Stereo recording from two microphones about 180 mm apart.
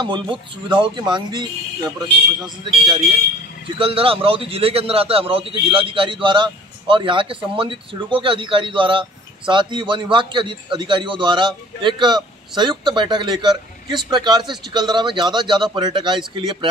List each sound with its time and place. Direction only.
0.0 s a man's voice: 25° right (ahead or behind)